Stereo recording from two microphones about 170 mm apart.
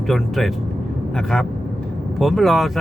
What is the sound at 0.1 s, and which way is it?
Speech, centre (ahead or behind).